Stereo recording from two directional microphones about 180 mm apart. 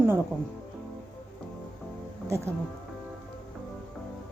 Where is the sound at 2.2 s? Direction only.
15° right (ahead or behind).